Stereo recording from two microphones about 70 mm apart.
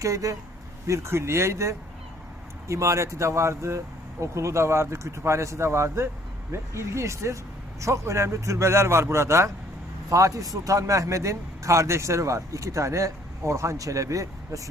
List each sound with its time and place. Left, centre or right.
0.0 s a man's voice: right
0.9 s a man's voice: right
10.1 s a man's voice: right